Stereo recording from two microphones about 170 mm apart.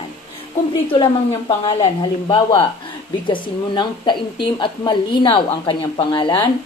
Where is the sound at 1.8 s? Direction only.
30° left (ahead or behind).